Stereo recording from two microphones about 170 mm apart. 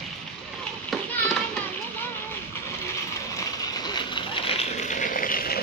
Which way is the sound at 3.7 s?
25° left (ahead or behind).